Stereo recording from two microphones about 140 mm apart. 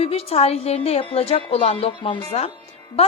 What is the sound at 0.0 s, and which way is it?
A woman's voice, 45° left (ahead or behind).